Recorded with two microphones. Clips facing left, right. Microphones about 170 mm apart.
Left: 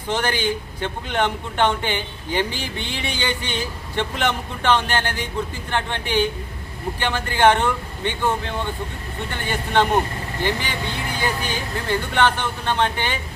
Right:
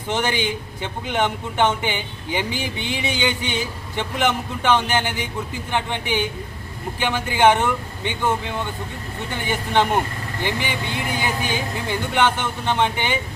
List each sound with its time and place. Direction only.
0.1 s a man's voice: 15° right (ahead or behind)
11.9 s a man's voice: 15° right (ahead or behind)